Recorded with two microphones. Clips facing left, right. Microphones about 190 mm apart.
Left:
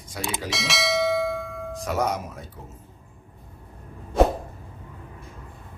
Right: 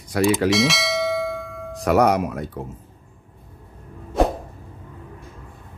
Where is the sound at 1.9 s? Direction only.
70° right (ahead or behind).